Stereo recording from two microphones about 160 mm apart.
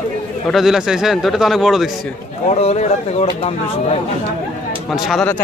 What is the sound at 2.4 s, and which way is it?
Speech, 40° left (ahead or behind).